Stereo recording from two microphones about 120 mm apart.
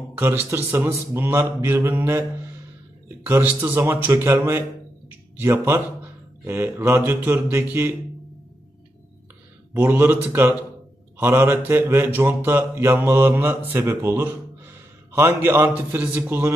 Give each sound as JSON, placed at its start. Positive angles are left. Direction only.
{"t": 0.2, "sound": "mantra", "side_deg": -20}
{"t": 3.3, "sound": "mantra", "side_deg": -15}
{"t": 9.8, "sound": "speech", "side_deg": -15}
{"t": 11.1, "sound": "mantra", "side_deg": -20}